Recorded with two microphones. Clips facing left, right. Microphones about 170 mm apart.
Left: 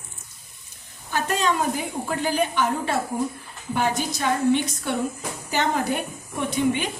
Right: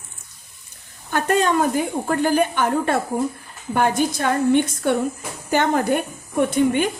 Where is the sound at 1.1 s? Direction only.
55° right (ahead or behind).